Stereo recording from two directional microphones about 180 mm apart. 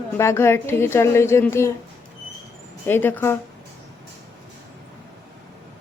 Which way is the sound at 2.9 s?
10° left (ahead or behind).